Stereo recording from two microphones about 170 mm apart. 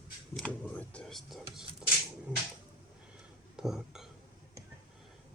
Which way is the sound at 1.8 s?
5° right (ahead or behind).